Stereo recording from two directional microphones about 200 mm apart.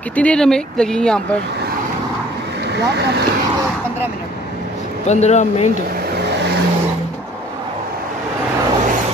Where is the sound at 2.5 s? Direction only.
55° right (ahead or behind).